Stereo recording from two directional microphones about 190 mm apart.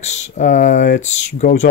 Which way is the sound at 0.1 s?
40° left (ahead or behind).